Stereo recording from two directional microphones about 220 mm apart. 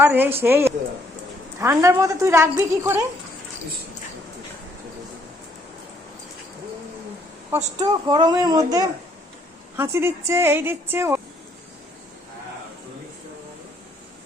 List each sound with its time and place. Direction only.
0.0 s a woman's voice: 10° right (ahead or behind)
7.5 s a woman's voice: 20° right (ahead or behind)